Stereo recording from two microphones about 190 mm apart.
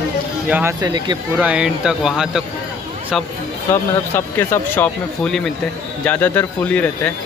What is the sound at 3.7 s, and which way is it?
Speech, 10° left (ahead or behind).